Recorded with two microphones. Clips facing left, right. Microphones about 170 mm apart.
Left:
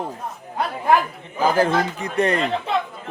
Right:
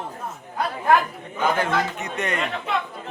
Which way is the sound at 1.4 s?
35° left (ahead or behind).